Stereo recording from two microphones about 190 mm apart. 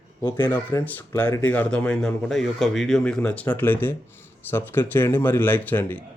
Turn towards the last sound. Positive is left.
turn(degrees=10)  # may be behind; listen again after turning